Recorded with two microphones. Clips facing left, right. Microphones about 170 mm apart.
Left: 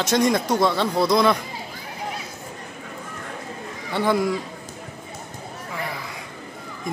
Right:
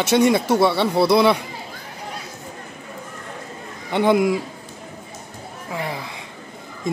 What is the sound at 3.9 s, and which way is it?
Speech, 20° right (ahead or behind).